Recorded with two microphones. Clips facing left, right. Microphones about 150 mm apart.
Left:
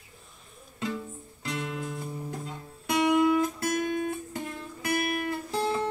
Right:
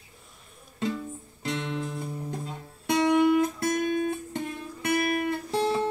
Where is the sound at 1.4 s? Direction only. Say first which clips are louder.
Right 3 dB; 25° right (ahead or behind).